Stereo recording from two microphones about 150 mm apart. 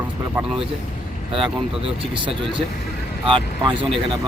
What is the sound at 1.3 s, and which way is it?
Speech, 35° right (ahead or behind).